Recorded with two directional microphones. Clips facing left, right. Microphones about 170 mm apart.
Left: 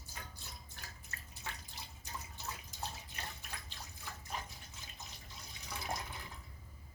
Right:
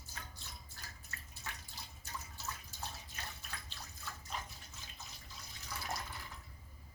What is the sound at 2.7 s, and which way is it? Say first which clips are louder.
Bathtub: left 5 dB; 15° left (ahead or behind).